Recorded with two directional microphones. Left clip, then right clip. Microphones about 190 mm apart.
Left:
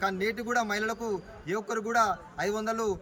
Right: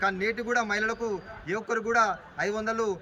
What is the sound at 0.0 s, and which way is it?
A man's voice, 10° left (ahead or behind).